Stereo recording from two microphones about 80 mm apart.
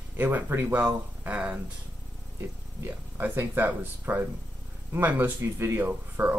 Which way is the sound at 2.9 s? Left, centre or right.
Right.